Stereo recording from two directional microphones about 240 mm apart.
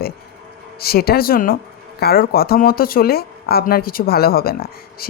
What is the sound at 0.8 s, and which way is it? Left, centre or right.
Speech, left.